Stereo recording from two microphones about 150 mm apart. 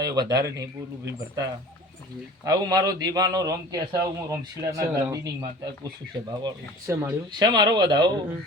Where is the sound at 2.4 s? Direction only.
25° right (ahead or behind).